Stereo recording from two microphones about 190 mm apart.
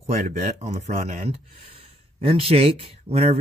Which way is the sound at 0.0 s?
40° right (ahead or behind).